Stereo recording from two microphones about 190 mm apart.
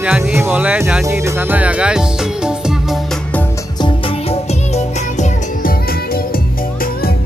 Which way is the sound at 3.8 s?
35° left (ahead or behind).